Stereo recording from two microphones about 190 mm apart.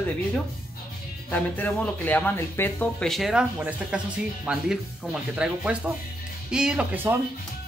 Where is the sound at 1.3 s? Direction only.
10° left (ahead or behind).